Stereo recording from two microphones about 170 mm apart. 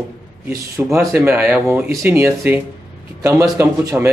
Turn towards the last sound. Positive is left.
turn(degrees=-15)  # may be behind; listen again after turning